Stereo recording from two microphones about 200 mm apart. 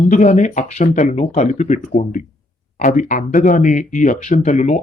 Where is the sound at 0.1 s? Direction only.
35° left (ahead or behind).